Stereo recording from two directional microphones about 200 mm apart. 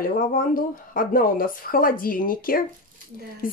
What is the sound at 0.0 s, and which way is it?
Speech, 45° left (ahead or behind).